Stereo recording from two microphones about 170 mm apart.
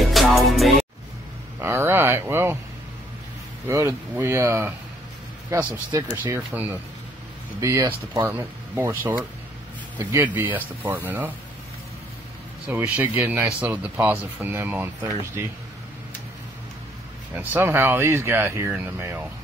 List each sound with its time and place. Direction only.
0.0 s music: centre (ahead or behind)
1.6 s a sound: 15° right (ahead or behind)
3.6 s speech: 15° right (ahead or behind)
5.9 s speech: 15° right (ahead or behind)
12.6 s speech: 10° right (ahead or behind)
17.3 s speech: 10° right (ahead or behind)